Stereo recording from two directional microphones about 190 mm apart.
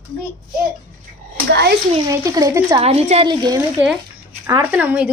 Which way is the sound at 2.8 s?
30° right (ahead or behind).